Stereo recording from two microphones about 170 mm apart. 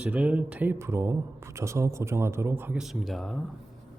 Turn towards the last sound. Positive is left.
turn(degrees=0)  # may be behind; listen again after turning